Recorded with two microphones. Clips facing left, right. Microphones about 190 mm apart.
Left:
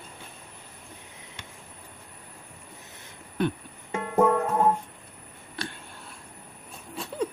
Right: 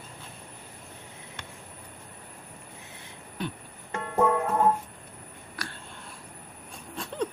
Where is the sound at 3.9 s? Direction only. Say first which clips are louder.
Left 2 dB; 10° left (ahead or behind).